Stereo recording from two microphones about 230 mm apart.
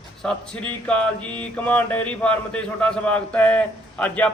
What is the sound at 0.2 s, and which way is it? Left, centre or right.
Mantra, centre.